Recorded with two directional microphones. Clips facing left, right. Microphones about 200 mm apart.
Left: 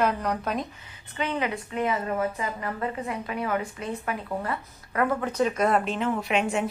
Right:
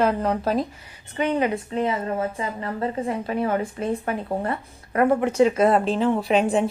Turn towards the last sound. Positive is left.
turn(degrees=-35)  # may be behind; listen again after turning